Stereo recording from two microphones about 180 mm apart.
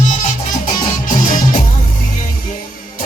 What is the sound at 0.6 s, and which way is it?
Music, 45° left (ahead or behind).